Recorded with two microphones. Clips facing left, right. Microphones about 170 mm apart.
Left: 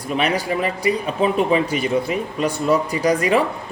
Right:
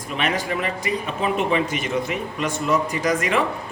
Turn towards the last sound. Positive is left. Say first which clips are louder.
# left 4 dB
turn(degrees=35)  # may be behind; listen again after turning